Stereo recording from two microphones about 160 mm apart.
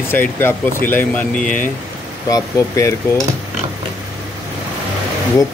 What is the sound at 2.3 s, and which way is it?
Speech, 20° left (ahead or behind).